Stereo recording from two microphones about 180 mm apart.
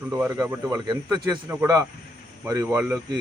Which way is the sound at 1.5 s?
20° right (ahead or behind).